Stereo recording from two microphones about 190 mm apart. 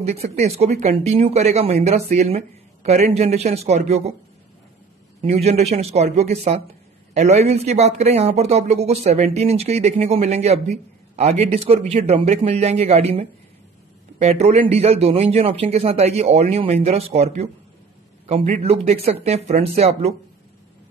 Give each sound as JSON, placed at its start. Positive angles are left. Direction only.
{"t": 0.4, "sound": "speech", "side_deg": -35}
{"t": 5.2, "sound": "speech", "side_deg": -35}